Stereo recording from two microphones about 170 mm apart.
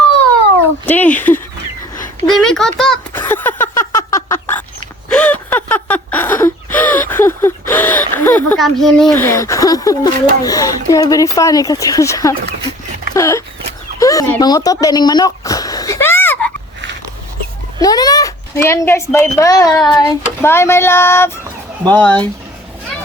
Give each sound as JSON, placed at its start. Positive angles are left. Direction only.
{"t": 0.9, "sound": "female singing", "side_deg": 10}
{"t": 2.2, "sound": "a child's voice", "side_deg": 5}
{"t": 3.1, "sound": "a sound", "side_deg": 10}
{"t": 5.0, "sound": "gasp", "side_deg": 5}
{"t": 9.1, "sound": "speech", "side_deg": 15}
{"t": 13.1, "sound": "a sound", "side_deg": 15}
{"t": 17.7, "sound": "speech", "side_deg": 20}
{"t": 19.8, "sound": "female singing", "side_deg": 25}